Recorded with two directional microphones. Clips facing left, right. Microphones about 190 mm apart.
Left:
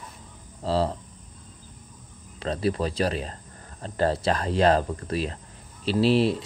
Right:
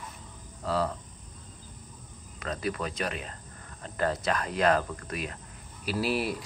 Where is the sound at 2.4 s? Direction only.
30° left (ahead or behind).